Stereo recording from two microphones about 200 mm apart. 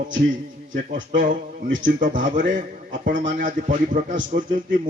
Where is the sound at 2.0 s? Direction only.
40° right (ahead or behind).